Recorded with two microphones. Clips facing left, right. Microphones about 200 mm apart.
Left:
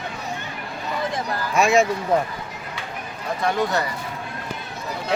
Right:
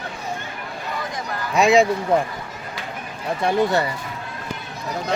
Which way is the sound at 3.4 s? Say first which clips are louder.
Right 3 dB; 30° right (ahead or behind).